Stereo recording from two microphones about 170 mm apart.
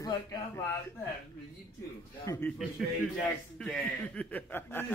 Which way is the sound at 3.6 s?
5° left (ahead or behind).